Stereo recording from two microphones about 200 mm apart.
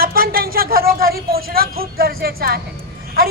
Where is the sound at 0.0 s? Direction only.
50° right (ahead or behind).